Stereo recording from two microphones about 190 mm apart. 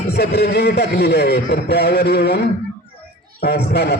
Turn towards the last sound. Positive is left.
turn(degrees=60)  # may be behind; listen again after turning